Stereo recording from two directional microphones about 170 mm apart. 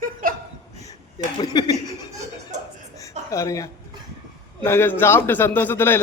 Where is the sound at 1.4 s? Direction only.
25° left (ahead or behind).